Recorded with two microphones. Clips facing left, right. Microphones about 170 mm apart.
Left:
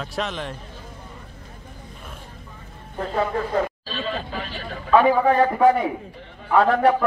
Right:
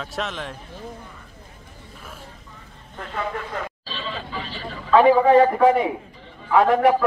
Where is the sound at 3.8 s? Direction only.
50° left (ahead or behind).